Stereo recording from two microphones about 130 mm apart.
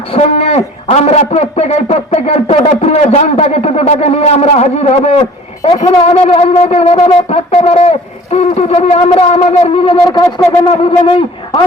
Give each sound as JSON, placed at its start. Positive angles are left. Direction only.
{"t": 0.1, "sound": "a man's voice", "side_deg": 50}